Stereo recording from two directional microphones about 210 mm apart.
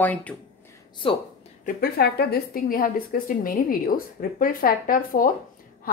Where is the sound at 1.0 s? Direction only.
25° left (ahead or behind).